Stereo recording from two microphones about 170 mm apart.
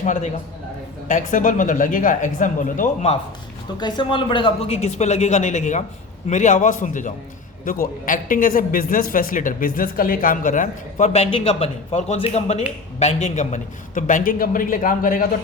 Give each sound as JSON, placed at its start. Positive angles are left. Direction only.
{"t": 0.0, "sound": "a man's voice", "side_deg": 45}
{"t": 3.8, "sound": "a man's voice", "side_deg": 25}